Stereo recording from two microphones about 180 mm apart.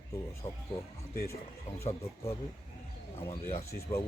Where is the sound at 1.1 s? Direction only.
60° left (ahead or behind).